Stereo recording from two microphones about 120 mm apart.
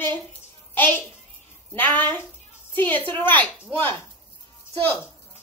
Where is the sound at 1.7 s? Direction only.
20° left (ahead or behind).